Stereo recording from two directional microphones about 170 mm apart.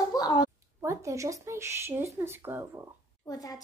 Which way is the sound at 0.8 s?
15° right (ahead or behind).